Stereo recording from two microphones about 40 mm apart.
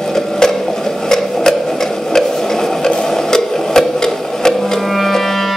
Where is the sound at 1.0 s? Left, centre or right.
Centre.